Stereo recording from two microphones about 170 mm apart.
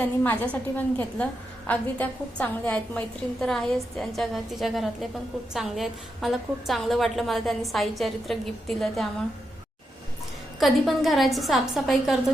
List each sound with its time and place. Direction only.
0.2 s a woman's voice: 10° left (ahead or behind)
10.6 s a woman's voice: centre (ahead or behind)